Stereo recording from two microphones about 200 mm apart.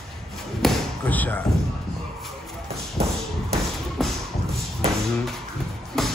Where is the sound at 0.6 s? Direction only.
10° left (ahead or behind).